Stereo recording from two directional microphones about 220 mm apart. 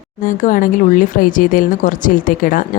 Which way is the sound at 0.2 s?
35° left (ahead or behind).